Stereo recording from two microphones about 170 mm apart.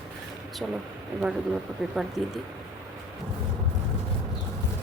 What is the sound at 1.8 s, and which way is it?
Speech, centre (ahead or behind).